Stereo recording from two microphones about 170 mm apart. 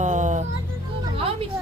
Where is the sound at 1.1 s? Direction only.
35° right (ahead or behind).